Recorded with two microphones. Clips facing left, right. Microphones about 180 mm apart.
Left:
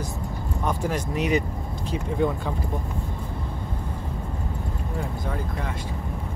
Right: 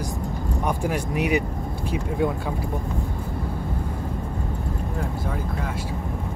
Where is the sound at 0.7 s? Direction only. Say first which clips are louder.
Even; 10° right (ahead or behind).